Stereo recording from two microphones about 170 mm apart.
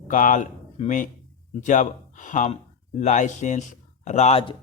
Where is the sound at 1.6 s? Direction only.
45° left (ahead or behind).